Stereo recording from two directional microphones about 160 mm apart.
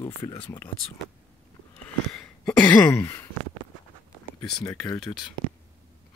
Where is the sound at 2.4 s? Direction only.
10° left (ahead or behind).